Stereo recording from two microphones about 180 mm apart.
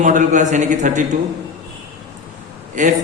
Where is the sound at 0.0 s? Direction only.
45° right (ahead or behind).